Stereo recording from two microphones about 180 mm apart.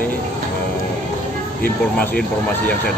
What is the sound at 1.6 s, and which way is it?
Speech, 10° left (ahead or behind).